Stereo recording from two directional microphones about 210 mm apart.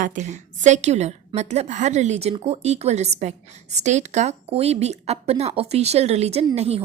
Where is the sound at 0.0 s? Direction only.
35° right (ahead or behind).